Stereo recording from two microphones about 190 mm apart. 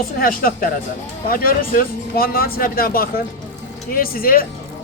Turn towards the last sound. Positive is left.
turn(degrees=50)  # may be behind; listen again after turning